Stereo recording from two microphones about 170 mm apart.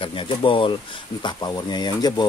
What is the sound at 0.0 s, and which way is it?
Speech, 30° left (ahead or behind).